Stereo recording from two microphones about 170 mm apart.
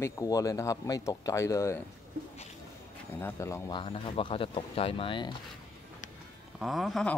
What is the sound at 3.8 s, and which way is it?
Speech, 35° left (ahead or behind).